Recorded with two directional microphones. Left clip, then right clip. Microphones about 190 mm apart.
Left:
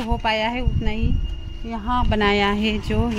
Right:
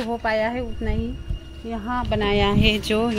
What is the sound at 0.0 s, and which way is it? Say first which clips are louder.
Speech: left 1 dB; centre (ahead or behind).